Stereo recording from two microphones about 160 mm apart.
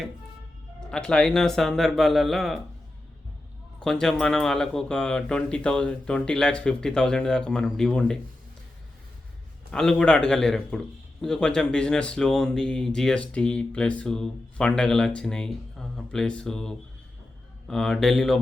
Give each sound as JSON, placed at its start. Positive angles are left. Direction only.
{"t": 0.9, "sound": "speech", "side_deg": 5}
{"t": 3.8, "sound": "speech", "side_deg": 5}
{"t": 9.7, "sound": "speech", "side_deg": 5}